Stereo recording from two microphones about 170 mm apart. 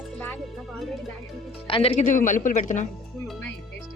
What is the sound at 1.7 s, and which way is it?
Speech, 35° left (ahead or behind).